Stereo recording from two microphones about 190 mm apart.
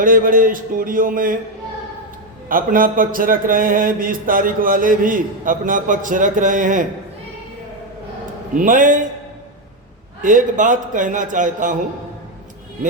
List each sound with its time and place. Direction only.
0.0 s a man's voice: 45° right (ahead or behind)
2.5 s a man's voice: 45° right (ahead or behind)
8.5 s a man's voice: 45° right (ahead or behind)
10.2 s a man's voice: 45° right (ahead or behind)